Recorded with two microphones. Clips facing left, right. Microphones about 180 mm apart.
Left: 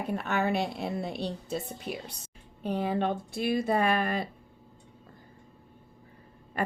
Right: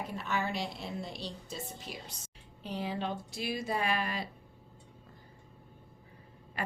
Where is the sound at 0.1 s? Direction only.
60° left (ahead or behind).